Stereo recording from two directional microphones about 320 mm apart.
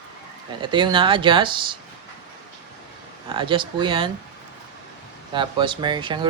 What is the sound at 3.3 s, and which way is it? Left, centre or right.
Speech, centre.